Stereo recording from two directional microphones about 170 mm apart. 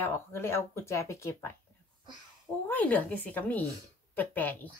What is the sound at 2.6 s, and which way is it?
Speech, 10° left (ahead or behind).